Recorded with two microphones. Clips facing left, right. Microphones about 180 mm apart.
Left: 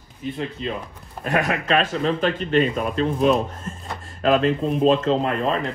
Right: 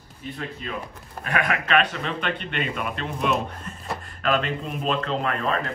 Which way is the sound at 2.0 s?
40° left (ahead or behind).